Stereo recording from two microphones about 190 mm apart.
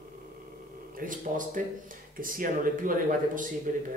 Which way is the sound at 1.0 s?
45° right (ahead or behind).